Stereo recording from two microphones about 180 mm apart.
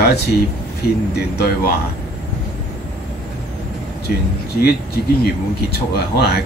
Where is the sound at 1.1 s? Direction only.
65° left (ahead or behind).